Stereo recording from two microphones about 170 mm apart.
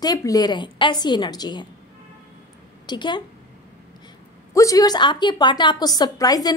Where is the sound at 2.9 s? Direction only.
25° left (ahead or behind).